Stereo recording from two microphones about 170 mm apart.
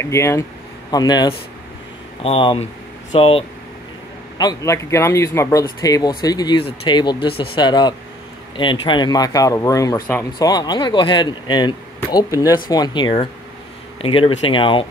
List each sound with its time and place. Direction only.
0.0 s speech: 15° left (ahead or behind); by 3.4 s 35° left (ahead or behind)
4.4 s speech: 20° left (ahead or behind)